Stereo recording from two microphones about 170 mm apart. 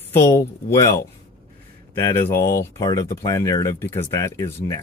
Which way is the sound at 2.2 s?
15° left (ahead or behind).